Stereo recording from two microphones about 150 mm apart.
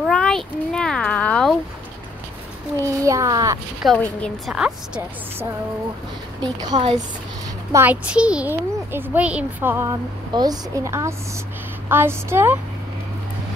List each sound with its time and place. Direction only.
0.1 s a sound: 5° left (ahead or behind)
2.8 s a sound: 20° right (ahead or behind)
3.8 s a woman's voice: 5° left (ahead or behind)
4.5 s a woman's voice: 5° right (ahead or behind)
6.4 s a woman's voice: 30° right (ahead or behind)
7.7 s a child's voice: 10° right (ahead or behind)
10.3 s a woman's voice: 25° right (ahead or behind)